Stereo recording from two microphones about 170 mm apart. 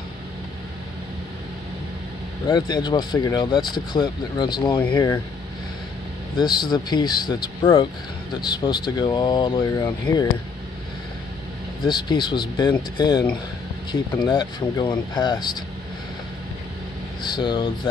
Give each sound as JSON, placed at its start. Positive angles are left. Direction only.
{"t": 2.4, "sound": "speech", "side_deg": 25}
{"t": 6.3, "sound": "speech", "side_deg": 25}
{"t": 11.8, "sound": "speech", "side_deg": 25}
{"t": 17.2, "sound": "speech", "side_deg": 25}